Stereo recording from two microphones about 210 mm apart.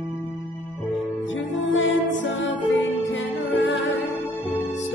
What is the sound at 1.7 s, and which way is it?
Music, 60° left (ahead or behind).